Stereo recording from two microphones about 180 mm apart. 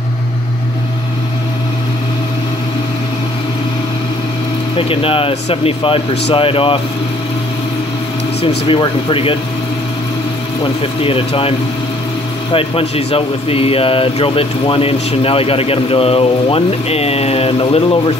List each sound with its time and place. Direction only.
4.7 s a man's voice: 30° left (ahead or behind)
8.4 s a man's voice: 30° left (ahead or behind)
11.0 s a man's voice: 30° left (ahead or behind)
12.5 s a man's voice: 30° left (ahead or behind)